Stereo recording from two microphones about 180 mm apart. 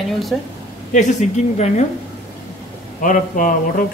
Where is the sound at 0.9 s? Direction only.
40° left (ahead or behind).